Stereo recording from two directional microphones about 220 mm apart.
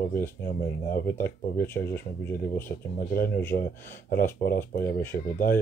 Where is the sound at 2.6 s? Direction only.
40° left (ahead or behind).